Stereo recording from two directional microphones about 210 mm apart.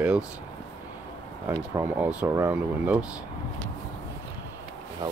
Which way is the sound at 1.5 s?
10° right (ahead or behind).